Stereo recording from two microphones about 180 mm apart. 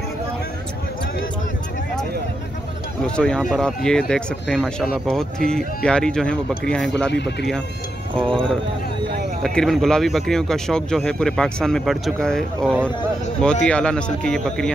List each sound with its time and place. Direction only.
3.2 s speech: 5° left (ahead or behind)
7.1 s speech: 70° left (ahead or behind)
8.2 s speech: 5° left (ahead or behind)